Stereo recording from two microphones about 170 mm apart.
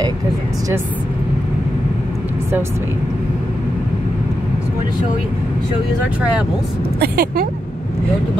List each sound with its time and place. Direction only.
7.0 s speech: 60° right (ahead or behind)